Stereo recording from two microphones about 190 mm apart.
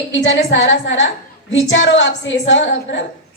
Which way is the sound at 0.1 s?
75° left (ahead or behind).